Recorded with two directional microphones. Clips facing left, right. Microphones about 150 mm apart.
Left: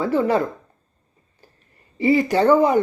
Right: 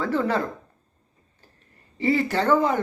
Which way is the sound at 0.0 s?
10° left (ahead or behind).